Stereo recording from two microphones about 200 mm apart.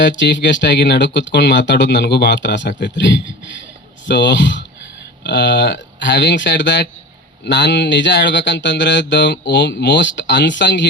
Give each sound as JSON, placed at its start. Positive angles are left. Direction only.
{"t": 0.2, "sound": "speech", "side_deg": 60}